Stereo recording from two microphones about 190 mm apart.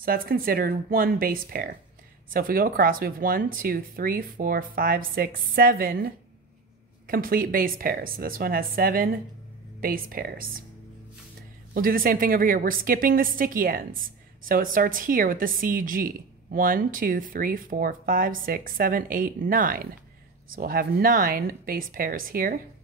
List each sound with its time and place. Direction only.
0.0 s a woman's voice: 50° right (ahead or behind)
11.7 s a woman's voice: 50° right (ahead or behind)